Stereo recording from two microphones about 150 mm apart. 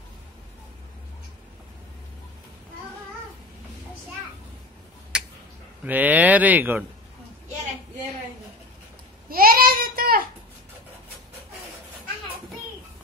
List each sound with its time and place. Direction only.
5.1 s tick-tock: 5° right (ahead or behind)
5.9 s speech: 10° right (ahead or behind)
9.3 s a sound: 75° right (ahead or behind)